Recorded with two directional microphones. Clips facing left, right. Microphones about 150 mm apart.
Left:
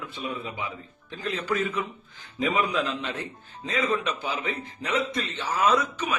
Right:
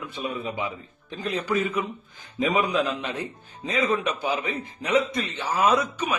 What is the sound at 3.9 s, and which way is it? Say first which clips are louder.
A man's voice: right 3 dB; 15° right (ahead or behind).